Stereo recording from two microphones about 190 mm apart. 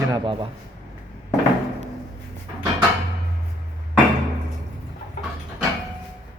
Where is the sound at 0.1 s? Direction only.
25° right (ahead or behind).